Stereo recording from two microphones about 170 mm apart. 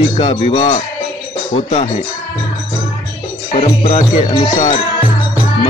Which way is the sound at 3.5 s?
40° left (ahead or behind).